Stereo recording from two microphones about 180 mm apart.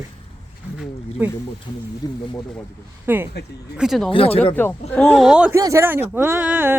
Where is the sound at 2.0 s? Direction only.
20° left (ahead or behind).